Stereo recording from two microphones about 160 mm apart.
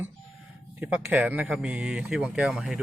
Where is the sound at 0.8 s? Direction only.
10° right (ahead or behind).